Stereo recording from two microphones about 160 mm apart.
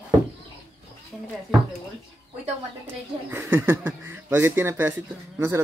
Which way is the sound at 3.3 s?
10° right (ahead or behind).